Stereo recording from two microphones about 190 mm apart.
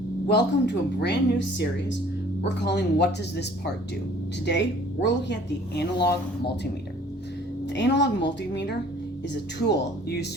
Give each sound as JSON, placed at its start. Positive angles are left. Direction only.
{"t": 0.3, "sound": "speech", "side_deg": 65}
{"t": 5.0, "sound": "speech", "side_deg": 65}
{"t": 7.7, "sound": "speech", "side_deg": 65}